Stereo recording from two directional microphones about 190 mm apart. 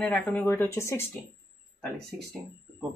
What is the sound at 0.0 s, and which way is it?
Speech, 5° left (ahead or behind).